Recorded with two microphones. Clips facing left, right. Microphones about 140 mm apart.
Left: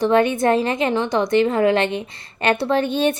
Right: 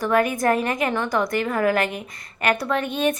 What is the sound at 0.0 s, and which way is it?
Speech, 25° left (ahead or behind).